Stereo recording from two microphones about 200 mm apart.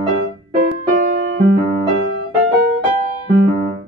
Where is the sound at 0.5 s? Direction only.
45° right (ahead or behind).